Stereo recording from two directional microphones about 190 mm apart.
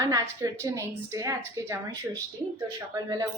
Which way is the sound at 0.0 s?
15° right (ahead or behind).